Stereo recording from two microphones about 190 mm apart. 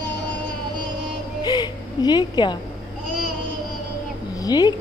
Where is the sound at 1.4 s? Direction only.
20° left (ahead or behind).